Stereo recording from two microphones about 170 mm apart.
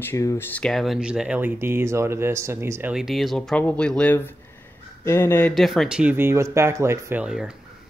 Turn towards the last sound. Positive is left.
turn(degrees=-5)  # may be behind; listen again after turning